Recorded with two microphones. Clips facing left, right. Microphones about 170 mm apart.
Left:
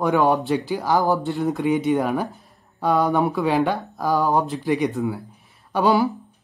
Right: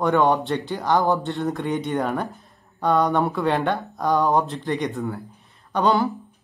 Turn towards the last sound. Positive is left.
turn(degrees=5)  # may be behind; listen again after turning